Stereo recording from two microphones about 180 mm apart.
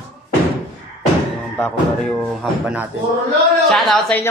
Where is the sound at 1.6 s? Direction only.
5° left (ahead or behind).